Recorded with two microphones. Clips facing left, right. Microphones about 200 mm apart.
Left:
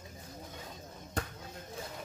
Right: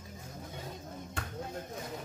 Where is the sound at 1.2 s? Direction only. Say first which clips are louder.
Left 6 dB; 40° left (ahead or behind).